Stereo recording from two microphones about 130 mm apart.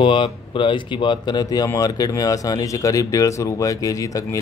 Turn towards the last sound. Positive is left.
turn(degrees=25)  # may be behind; listen again after turning